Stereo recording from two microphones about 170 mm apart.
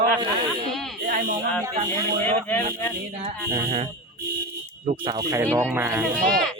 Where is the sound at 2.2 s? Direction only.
15° left (ahead or behind).